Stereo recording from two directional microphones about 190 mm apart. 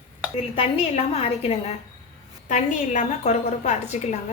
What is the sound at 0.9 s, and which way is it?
A woman's voice, 35° left (ahead or behind).